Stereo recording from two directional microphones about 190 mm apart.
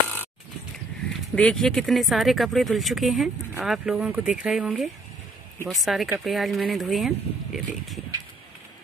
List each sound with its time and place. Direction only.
1.3 s speech: 5° left (ahead or behind)